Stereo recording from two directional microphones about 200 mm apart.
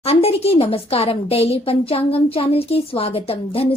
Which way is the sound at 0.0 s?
30° left (ahead or behind).